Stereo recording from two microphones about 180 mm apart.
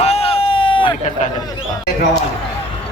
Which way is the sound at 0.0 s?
35° left (ahead or behind).